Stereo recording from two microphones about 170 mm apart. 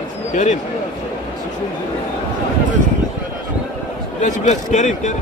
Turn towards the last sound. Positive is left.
turn(degrees=45)  # may be behind; listen again after turning